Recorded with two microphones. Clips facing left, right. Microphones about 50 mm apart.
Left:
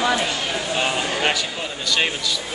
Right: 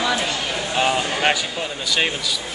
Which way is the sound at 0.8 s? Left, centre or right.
Centre.